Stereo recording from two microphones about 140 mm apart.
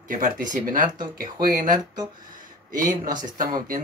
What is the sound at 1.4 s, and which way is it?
Speech, 90° right.